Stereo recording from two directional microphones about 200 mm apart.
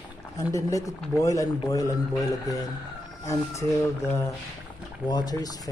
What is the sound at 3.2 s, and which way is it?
Speech, 15° left (ahead or behind).